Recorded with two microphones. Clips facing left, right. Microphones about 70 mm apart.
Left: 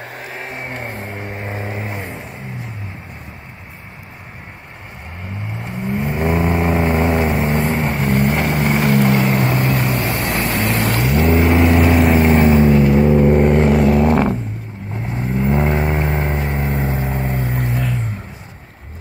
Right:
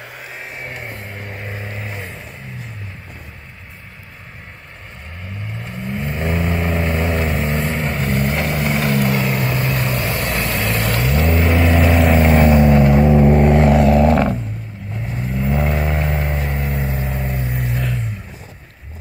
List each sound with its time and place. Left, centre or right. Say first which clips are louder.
0.1 s vehicle: left 3 dB; left
5.6 s vehicle: left 4 dB; left
9.8 s vehicle: left 2 dB; centre
11.7 s vehicle: left 2 dB; centre
12.4 s vehicle: even; centre
12.8 s vehicle: even; centre
15.1 s vehicle: left 3 dB; left
17.4 s vehicle: left 2 dB; left